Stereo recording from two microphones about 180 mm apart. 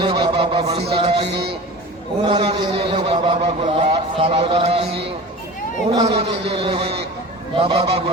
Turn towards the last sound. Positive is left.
turn(degrees=-35)  # may be behind; listen again after turning